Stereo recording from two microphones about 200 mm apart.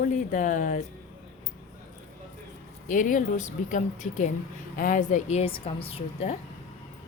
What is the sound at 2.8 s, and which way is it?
Speech, 40° left (ahead or behind).